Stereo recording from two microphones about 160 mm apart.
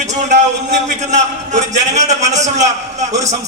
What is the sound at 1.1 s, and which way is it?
A man's voice, 45° right (ahead or behind).